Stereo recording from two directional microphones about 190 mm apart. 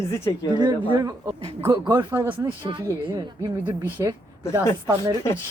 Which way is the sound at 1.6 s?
15° right (ahead or behind).